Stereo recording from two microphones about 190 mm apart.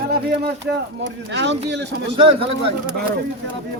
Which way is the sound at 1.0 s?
65° right (ahead or behind).